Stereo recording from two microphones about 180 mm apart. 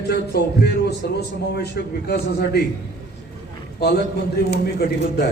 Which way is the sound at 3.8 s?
65° left (ahead or behind).